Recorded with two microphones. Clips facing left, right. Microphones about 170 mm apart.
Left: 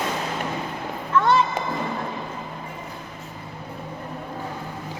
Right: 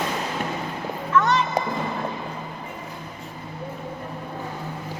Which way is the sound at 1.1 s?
30° left (ahead or behind).